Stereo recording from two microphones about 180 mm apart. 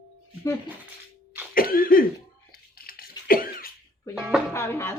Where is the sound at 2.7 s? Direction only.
55° left (ahead or behind).